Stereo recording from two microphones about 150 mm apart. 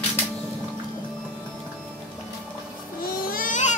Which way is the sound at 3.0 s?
70° left (ahead or behind).